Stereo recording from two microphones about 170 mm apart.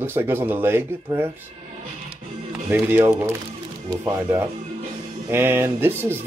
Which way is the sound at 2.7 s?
10° right (ahead or behind).